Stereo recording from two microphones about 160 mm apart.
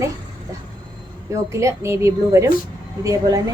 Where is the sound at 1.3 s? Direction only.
20° right (ahead or behind).